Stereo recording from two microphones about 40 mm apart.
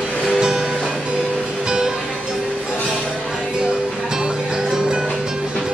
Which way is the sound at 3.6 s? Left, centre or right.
Centre.